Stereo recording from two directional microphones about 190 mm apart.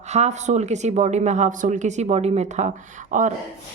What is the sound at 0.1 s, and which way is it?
A woman's voice, 35° right (ahead or behind).